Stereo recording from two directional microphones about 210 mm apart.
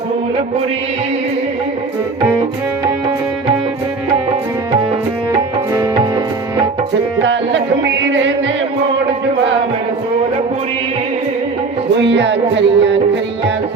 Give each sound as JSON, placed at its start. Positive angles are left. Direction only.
{"t": 5.7, "sound": "music", "side_deg": -15}
{"t": 7.2, "sound": "music", "side_deg": -60}
{"t": 12.1, "sound": "music", "side_deg": -55}